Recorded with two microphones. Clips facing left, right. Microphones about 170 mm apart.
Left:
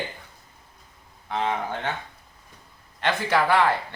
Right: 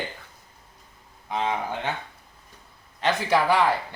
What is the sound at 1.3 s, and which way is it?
Speech, 15° right (ahead or behind).